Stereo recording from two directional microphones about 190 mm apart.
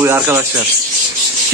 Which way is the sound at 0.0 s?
10° right (ahead or behind).